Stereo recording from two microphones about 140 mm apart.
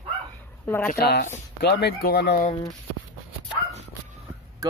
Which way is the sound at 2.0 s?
90° left.